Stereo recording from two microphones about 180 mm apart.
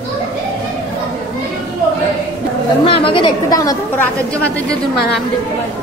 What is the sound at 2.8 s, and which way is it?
A woman's voice, 30° left (ahead or behind).